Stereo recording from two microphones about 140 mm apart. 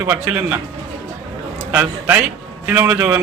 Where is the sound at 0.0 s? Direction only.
20° right (ahead or behind).